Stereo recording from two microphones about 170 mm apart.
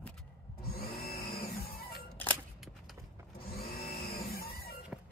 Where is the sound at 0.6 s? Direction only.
60° left (ahead or behind).